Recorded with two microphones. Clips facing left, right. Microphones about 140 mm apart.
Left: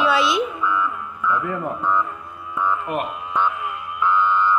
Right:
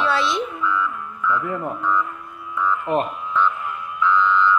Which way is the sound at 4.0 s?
45° left (ahead or behind).